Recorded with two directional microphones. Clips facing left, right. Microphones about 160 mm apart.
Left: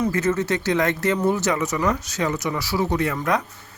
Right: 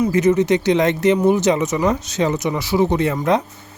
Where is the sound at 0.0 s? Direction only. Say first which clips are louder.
Right 6 dB; 15° right (ahead or behind).